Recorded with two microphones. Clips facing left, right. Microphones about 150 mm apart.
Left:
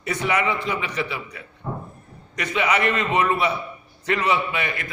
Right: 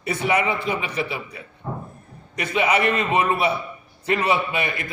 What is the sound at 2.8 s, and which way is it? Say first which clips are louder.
Speech: right 1 dB; 15° right (ahead or behind).